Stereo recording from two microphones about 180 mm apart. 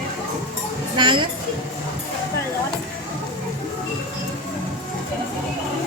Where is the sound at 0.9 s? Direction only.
25° right (ahead or behind).